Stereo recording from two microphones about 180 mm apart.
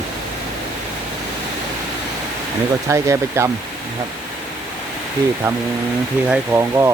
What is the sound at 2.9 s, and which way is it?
Speech, 15° right (ahead or behind).